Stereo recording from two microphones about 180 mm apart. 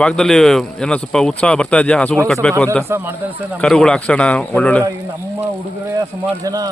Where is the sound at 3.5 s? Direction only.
5° left (ahead or behind).